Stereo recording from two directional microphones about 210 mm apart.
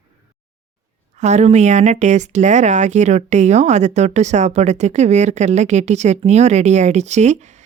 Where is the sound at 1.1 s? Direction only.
35° right (ahead or behind).